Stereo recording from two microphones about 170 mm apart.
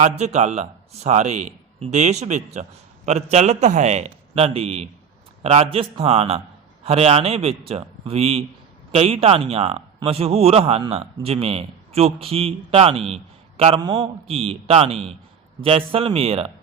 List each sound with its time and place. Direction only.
0.0 s a man's voice: 40° right (ahead or behind)